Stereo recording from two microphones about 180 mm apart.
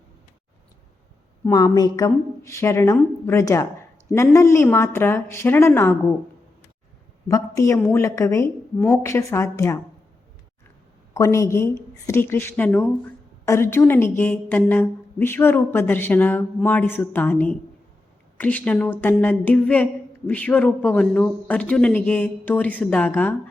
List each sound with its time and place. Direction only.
1.5 s speech: 20° left (ahead or behind)
7.3 s speech: 20° left (ahead or behind)
11.1 s speech: 15° left (ahead or behind)